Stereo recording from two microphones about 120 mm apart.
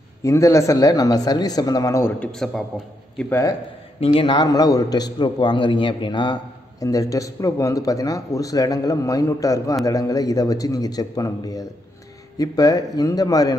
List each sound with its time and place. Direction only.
0.2 s a man's voice: 25° left (ahead or behind)
2.1 s a man's voice: 5° left (ahead or behind)
3.3 s a man's voice: 20° left (ahead or behind)
4.0 s a man's voice: 45° left (ahead or behind)